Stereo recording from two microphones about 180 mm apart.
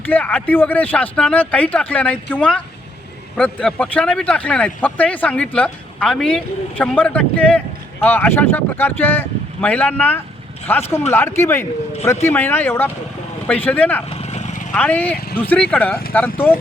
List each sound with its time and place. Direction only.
0.1 s speech: 10° left (ahead or behind)
14.1 s vehicle: 35° left (ahead or behind)
14.7 s speech: 10° left (ahead or behind)